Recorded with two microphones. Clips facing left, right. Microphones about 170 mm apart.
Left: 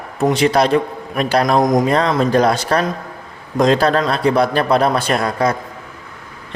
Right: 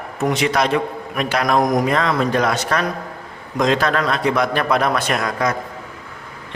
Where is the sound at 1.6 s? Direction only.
20° left (ahead or behind).